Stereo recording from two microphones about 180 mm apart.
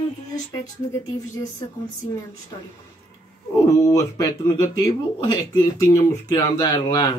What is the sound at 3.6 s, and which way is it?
Speech, 20° left (ahead or behind).